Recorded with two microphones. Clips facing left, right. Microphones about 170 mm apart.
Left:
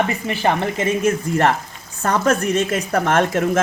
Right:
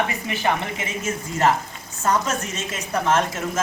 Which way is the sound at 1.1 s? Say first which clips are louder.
Even; 55° left (ahead or behind).